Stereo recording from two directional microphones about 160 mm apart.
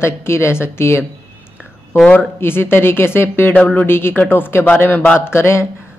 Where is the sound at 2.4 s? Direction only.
15° left (ahead or behind).